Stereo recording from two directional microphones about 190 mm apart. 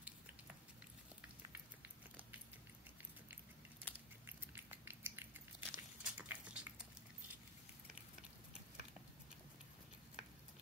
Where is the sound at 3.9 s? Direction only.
10° left (ahead or behind).